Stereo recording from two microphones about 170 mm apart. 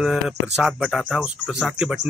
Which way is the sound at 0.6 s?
5° right (ahead or behind).